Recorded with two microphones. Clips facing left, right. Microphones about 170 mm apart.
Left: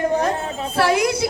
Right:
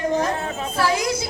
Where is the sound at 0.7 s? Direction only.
60° left (ahead or behind).